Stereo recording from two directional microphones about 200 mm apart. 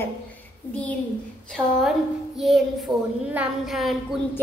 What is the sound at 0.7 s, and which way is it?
Child singing, 5° left (ahead or behind).